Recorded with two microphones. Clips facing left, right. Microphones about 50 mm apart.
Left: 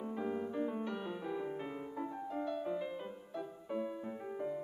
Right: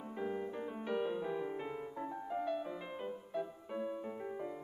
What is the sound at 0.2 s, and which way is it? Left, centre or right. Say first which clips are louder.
Music: left 1 dB; centre.